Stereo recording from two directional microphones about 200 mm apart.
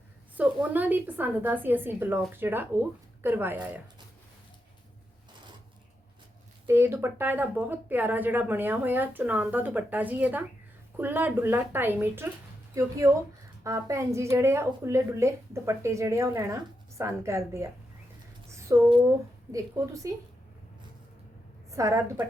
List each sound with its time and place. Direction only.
0.3 s speech: 10° right (ahead or behind)
6.7 s speech: 10° right (ahead or behind)
18.5 s a sound: 15° right (ahead or behind)
19.5 s speech: 15° right (ahead or behind)
21.7 s speech: 15° right (ahead or behind)